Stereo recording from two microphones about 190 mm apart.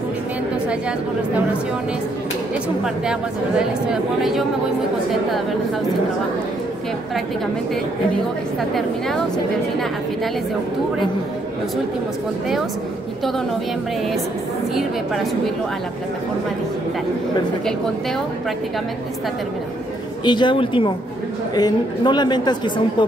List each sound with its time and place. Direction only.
2.8 s a woman's voice: 5° right (ahead or behind)
14.8 s a woman's voice: centre (ahead or behind)
20.2 s speech: 25° left (ahead or behind)